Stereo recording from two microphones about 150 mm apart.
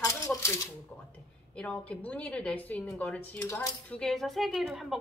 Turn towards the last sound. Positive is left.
turn(degrees=0)  # may be behind; listen again after turning